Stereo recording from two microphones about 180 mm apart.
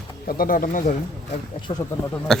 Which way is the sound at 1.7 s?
30° left (ahead or behind).